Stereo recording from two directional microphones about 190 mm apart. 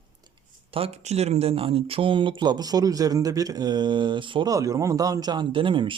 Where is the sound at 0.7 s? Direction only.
30° right (ahead or behind).